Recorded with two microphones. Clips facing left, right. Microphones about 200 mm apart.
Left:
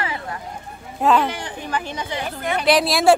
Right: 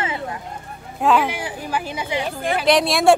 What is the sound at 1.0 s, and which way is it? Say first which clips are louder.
Speech: even; 5° right (ahead or behind).